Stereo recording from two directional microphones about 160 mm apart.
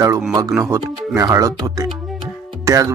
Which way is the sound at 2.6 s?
20° right (ahead or behind).